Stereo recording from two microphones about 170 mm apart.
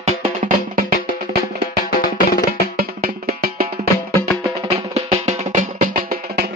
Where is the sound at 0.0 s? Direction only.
50° right (ahead or behind).